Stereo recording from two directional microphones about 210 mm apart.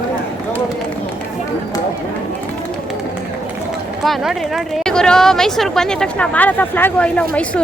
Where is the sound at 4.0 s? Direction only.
Centre (ahead or behind).